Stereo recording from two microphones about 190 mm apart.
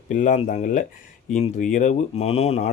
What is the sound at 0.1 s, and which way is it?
A man's voice, 40° left (ahead or behind).